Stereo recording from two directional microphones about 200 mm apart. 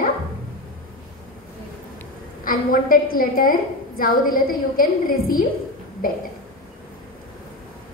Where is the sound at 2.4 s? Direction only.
45° left (ahead or behind).